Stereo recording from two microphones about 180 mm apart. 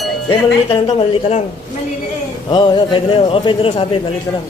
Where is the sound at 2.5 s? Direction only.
25° left (ahead or behind).